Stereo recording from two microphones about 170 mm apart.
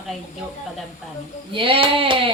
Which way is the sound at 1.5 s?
30° right (ahead or behind).